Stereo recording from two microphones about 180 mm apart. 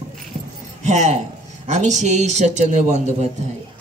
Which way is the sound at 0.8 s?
40° right (ahead or behind).